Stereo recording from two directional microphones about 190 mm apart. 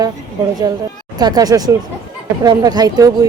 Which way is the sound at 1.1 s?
20° right (ahead or behind).